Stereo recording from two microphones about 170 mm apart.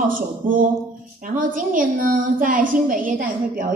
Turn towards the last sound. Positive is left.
turn(degrees=-55)  # may be behind; listen again after turning